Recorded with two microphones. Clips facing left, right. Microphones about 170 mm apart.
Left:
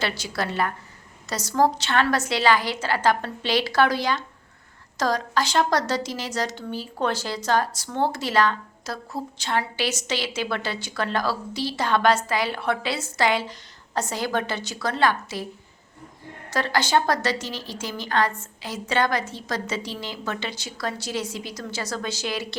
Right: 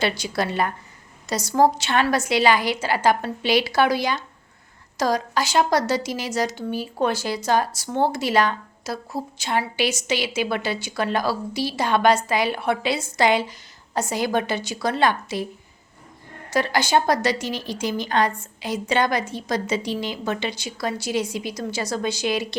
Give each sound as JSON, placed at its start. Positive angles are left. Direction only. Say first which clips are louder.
{"t": 0.0, "sound": "a woman's voice", "louder": "right 4 dB", "side_deg": -15}
{"t": 16.5, "sound": "a woman's voice", "louder": "right 2 dB", "side_deg": -15}